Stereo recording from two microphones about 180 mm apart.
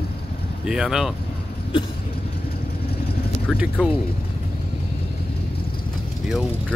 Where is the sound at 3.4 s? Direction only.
Centre (ahead or behind).